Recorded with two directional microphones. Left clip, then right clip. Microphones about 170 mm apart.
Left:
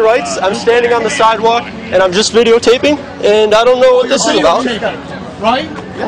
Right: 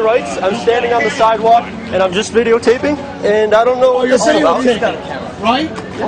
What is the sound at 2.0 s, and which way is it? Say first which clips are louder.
Speech: left 3 dB; 90° left.